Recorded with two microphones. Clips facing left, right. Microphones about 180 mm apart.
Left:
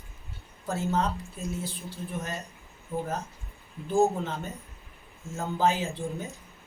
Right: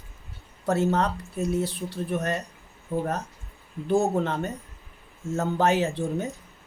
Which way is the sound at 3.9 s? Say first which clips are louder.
Right 2 dB; 70° right (ahead or behind).